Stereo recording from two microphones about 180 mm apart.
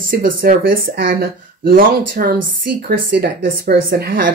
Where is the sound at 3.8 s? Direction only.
55° right (ahead or behind).